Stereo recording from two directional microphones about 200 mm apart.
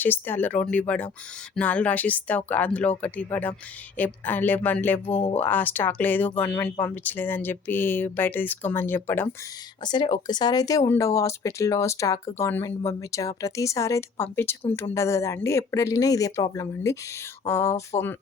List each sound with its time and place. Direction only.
0.0 s speech: 10° left (ahead or behind)
9.8 s speech: 20° left (ahead or behind)